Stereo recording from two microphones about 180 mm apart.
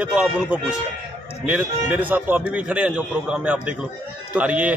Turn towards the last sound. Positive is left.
turn(degrees=-5)  # may be behind; listen again after turning